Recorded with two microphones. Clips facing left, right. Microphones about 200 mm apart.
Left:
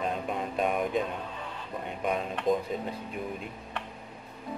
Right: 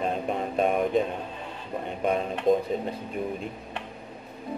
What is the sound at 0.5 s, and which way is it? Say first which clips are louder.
Speech: right 5 dB; 35° right (ahead or behind).